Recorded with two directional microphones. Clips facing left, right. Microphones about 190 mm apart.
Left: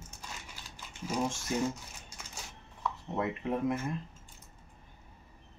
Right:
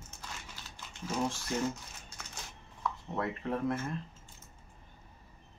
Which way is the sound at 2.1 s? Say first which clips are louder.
Even; 10° left (ahead or behind).